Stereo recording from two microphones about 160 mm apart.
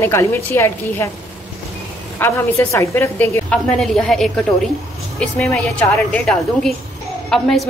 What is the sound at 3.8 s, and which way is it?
A woman's voice, 5° left (ahead or behind).